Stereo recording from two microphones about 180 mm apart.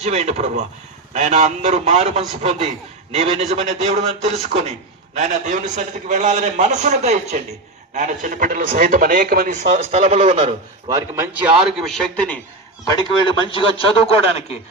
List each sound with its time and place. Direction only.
0.0 s a man's voice: 40° right (ahead or behind)
10.8 s a man's voice: 15° right (ahead or behind); by 12.4 s 5° left (ahead or behind)
13.5 s speech: 30° left (ahead or behind)